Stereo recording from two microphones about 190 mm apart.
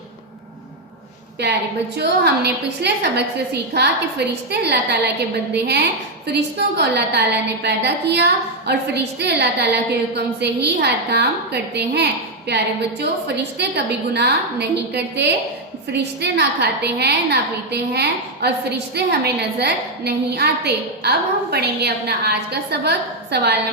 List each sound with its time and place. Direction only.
2.0 s a woman's voice: 60° right (ahead or behind)